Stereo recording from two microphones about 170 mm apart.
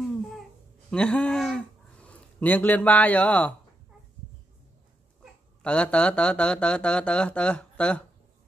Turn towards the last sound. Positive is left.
turn(degrees=5)  # may be behind; listen again after turning